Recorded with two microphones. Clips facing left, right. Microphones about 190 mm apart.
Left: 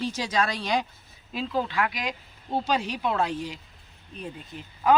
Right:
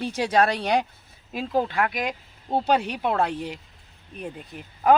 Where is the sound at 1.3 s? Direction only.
50° right (ahead or behind).